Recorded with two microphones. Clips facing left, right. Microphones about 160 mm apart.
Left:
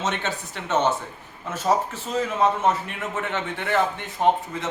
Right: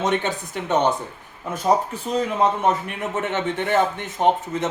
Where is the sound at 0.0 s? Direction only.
15° right (ahead or behind).